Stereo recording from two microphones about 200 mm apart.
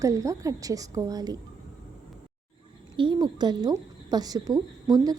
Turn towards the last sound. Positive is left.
turn(degrees=-20)  # may be behind; listen again after turning